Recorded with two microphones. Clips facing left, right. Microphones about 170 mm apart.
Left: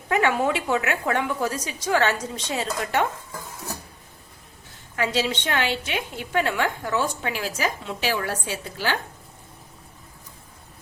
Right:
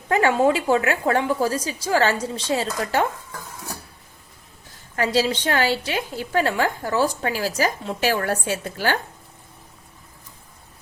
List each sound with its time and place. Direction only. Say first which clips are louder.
0.1 s a woman's voice: right 4 dB; 35° right (ahead or behind)
4.9 s a woman's voice: right 4 dB; 40° right (ahead or behind)